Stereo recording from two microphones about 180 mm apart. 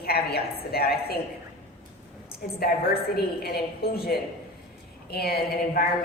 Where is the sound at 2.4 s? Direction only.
55° left (ahead or behind).